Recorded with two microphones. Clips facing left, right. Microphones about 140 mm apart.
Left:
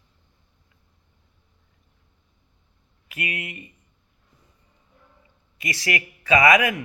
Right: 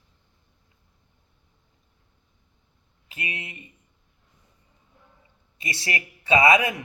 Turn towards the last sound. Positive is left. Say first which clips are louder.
# left 1 dB
turn(degrees=-30)  # may be behind; listen again after turning